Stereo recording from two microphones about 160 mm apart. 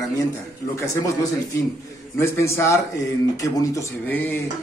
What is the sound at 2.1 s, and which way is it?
A man's voice, 15° left (ahead or behind).